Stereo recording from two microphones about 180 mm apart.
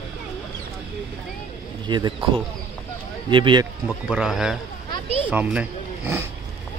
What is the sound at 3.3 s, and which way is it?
Speech, 25° right (ahead or behind).